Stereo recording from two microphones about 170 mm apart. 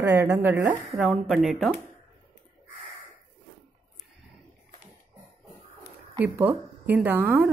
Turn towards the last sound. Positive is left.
turn(degrees=-10)  # may be behind; listen again after turning